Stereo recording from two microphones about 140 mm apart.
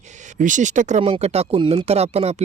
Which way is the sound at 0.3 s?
65° right (ahead or behind).